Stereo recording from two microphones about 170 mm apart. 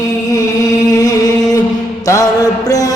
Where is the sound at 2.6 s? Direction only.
20° left (ahead or behind).